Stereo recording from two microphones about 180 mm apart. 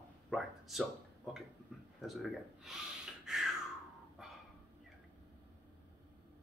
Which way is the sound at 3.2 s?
5° right (ahead or behind).